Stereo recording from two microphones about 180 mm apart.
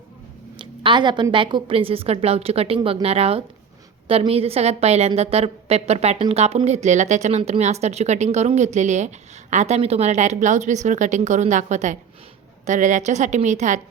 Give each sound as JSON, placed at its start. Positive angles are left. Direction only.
{"t": 0.6, "sound": "a woman's voice", "side_deg": -25}